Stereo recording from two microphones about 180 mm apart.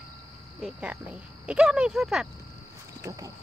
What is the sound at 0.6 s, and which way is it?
Speech, 5° right (ahead or behind).